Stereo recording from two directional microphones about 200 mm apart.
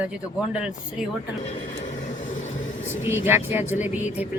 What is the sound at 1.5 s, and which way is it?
Vehicle, 35° left (ahead or behind).